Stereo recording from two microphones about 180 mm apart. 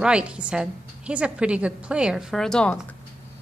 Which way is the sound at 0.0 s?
5° right (ahead or behind).